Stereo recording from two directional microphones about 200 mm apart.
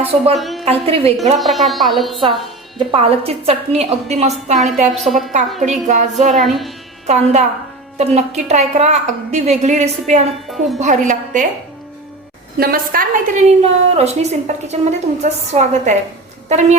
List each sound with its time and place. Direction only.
0.0 s a woman's voice: 30° right (ahead or behind)
0.3 s a woman's voice: centre (ahead or behind)
0.6 s a woman's voice: 30° right (ahead or behind)
1.4 s speech: centre (ahead or behind)
2.7 s a woman's voice: 25° right (ahead or behind)
4.9 s speech: centre (ahead or behind)
5.6 s a woman's voice: 35° right (ahead or behind)
6.4 s speech: centre (ahead or behind)
7.9 s a woman's voice: 35° right (ahead or behind)
10.5 s speech: centre (ahead or behind)
10.8 s a woman's voice: 40° right (ahead or behind)
12.5 s a woman's voice: 50° right (ahead or behind)
13.6 s a woman's voice: 30° right (ahead or behind)